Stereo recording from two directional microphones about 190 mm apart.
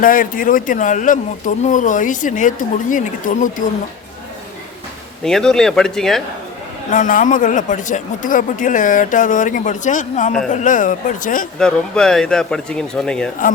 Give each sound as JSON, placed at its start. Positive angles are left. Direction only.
{"t": 0.0, "sound": "speech", "side_deg": 45}
{"t": 5.2, "sound": "speech", "side_deg": 5}
{"t": 6.9, "sound": "speech", "side_deg": 40}
{"t": 11.6, "sound": "speech", "side_deg": 5}